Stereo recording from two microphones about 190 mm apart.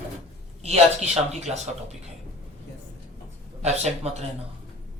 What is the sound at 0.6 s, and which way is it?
Speech, 35° right (ahead or behind).